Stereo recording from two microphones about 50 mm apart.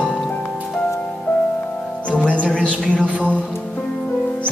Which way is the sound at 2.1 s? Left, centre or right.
Left.